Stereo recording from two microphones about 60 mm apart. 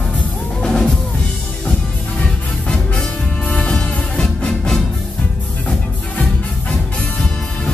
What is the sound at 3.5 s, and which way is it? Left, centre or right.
Music, centre.